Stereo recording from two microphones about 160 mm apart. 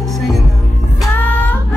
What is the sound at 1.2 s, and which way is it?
Child singing, 10° left (ahead or behind).